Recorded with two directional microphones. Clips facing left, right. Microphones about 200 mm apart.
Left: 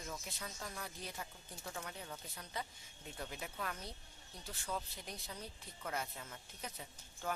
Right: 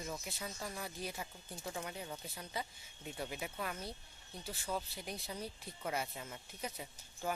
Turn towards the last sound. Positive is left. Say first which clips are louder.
# right 2 dB
turn(degrees=-10)  # may be behind; listen again after turning